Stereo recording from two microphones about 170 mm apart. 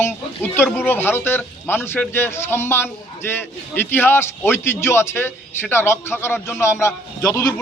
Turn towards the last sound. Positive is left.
turn(degrees=20)  # may be behind; listen again after turning